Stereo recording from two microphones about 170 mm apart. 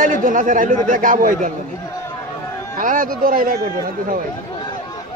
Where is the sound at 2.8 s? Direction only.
55° right (ahead or behind).